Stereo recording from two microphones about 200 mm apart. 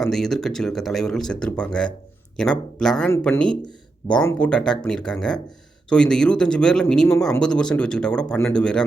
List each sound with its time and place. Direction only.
0.0 s speech: centre (ahead or behind)